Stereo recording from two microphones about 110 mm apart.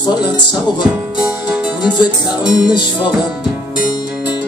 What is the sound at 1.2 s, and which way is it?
Music, 10° right (ahead or behind).